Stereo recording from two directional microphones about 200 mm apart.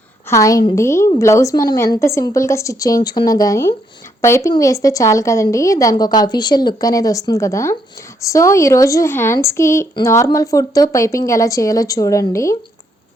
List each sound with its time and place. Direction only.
0.3 s speech: 15° left (ahead or behind)